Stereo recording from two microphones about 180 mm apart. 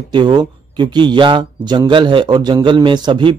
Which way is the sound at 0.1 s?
25° right (ahead or behind).